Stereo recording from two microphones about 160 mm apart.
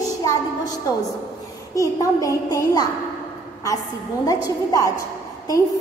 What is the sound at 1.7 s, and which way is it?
A woman's voice, 20° left (ahead or behind).